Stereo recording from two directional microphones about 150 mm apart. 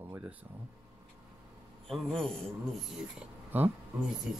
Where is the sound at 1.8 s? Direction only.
5° left (ahead or behind).